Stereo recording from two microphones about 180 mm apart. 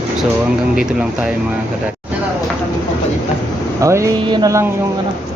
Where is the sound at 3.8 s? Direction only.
15° right (ahead or behind).